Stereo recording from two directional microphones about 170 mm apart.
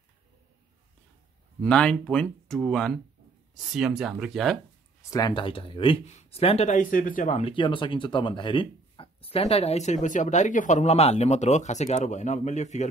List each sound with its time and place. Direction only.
1.6 s speech: 5° left (ahead or behind)
5.1 s speech: 25° left (ahead or behind); by 12.8 s 45° left (ahead or behind)